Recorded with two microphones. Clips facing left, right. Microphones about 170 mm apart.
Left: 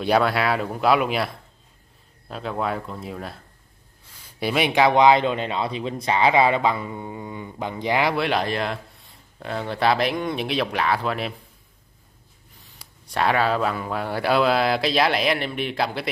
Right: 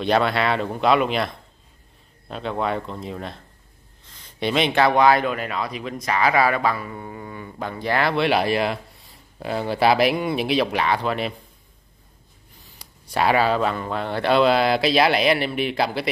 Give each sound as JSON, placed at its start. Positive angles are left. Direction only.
{"t": 0.0, "sound": "speech", "side_deg": 5}
{"t": 8.2, "sound": "speech", "side_deg": -5}
{"t": 12.6, "sound": "speech", "side_deg": 0}